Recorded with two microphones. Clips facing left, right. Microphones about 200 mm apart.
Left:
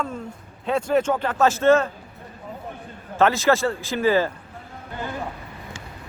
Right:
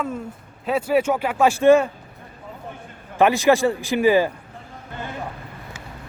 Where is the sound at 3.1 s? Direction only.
15° right (ahead or behind).